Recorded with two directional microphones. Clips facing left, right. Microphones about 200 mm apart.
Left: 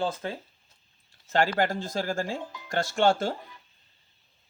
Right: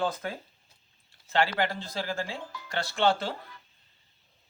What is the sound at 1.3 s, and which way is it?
Speech, 45° left (ahead or behind).